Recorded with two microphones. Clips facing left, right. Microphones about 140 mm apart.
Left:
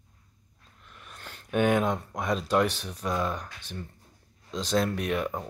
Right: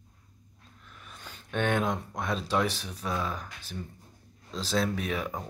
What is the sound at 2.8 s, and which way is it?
Speech, 5° right (ahead or behind).